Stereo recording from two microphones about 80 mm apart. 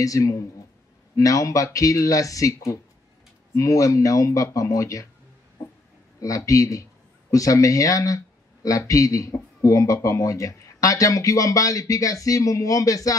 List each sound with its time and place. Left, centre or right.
0.0 s speech: left
6.2 s a man's voice: left